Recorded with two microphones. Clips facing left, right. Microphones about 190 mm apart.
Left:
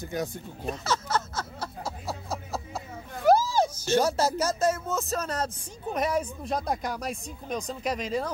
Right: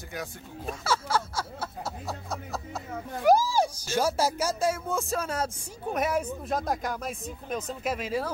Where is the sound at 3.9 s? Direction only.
10° right (ahead or behind).